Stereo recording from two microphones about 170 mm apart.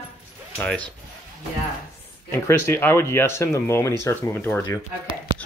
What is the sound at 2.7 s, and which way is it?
Speech, 15° left (ahead or behind).